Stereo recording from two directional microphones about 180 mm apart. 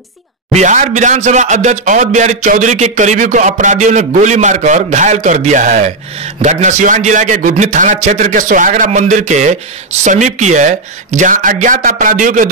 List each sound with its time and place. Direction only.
0.5 s speech: 40° right (ahead or behind)